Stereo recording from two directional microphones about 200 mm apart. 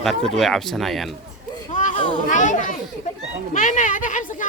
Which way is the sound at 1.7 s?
40° left (ahead or behind).